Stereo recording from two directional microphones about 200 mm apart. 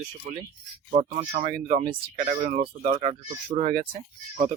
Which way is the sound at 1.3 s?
40° right (ahead or behind).